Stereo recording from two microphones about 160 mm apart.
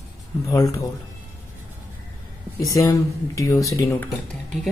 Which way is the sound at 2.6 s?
20° left (ahead or behind).